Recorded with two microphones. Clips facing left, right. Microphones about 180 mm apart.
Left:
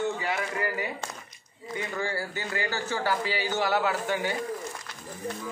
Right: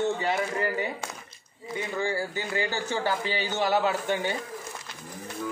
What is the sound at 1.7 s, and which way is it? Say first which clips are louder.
A man's voice: right 2 dB; 15° right (ahead or behind).